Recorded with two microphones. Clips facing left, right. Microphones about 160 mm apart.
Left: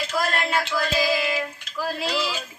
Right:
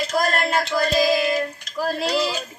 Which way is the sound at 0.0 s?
40° right (ahead or behind).